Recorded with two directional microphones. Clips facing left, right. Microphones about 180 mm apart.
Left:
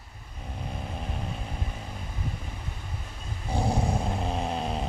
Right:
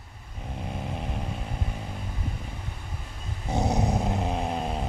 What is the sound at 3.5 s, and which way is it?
Dog, 20° right (ahead or behind).